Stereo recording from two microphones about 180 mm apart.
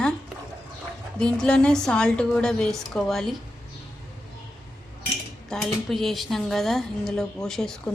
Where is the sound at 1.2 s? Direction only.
5° left (ahead or behind).